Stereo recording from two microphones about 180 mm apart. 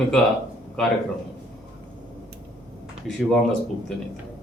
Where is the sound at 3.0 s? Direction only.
Centre (ahead or behind).